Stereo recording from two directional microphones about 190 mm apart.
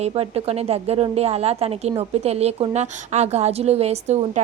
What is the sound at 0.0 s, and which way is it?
A woman's voice, 30° right (ahead or behind).